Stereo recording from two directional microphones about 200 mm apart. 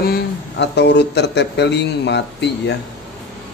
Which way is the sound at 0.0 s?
55° left (ahead or behind).